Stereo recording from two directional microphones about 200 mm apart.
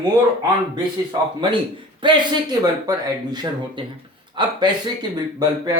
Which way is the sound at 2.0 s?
20° right (ahead or behind).